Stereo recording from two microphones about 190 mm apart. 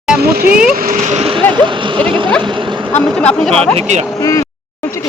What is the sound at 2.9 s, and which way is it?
Speech, 5° left (ahead or behind).